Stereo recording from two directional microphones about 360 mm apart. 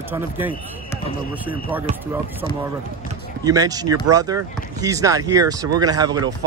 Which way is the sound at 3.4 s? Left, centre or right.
Centre.